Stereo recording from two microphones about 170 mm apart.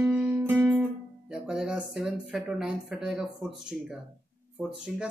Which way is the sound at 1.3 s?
5° right (ahead or behind).